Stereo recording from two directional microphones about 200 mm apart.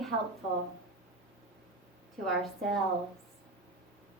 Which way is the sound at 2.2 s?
Centre (ahead or behind).